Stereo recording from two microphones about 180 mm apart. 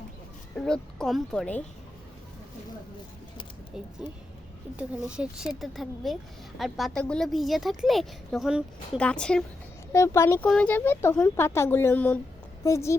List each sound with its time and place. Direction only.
0.5 s a woman's voice: 5° left (ahead or behind)
4.0 s a woman's voice: 5° right (ahead or behind); by 13.0 s 15° left (ahead or behind)